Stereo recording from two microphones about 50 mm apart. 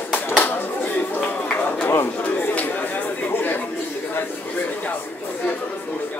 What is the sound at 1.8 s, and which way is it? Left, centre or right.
Chatter, left.